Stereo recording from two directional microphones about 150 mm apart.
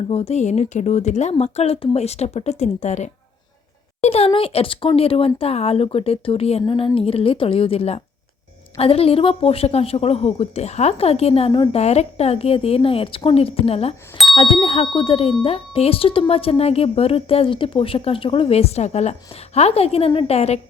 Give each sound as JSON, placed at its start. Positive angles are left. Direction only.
{"t": 0.1, "sound": "a woman's voice", "side_deg": 45}